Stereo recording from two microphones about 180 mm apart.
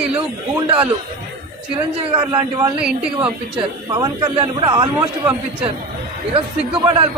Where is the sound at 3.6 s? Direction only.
30° right (ahead or behind).